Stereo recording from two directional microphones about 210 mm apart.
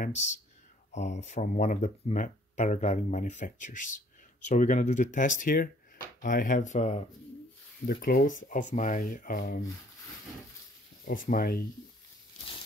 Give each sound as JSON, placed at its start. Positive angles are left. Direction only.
{"t": 0.0, "sound": "speech", "side_deg": 35}
{"t": 7.8, "sound": "speech", "side_deg": 45}
{"t": 11.2, "sound": "speech", "side_deg": 45}